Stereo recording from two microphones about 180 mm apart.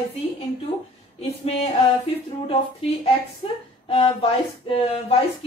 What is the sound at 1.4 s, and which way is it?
Music, 35° left (ahead or behind).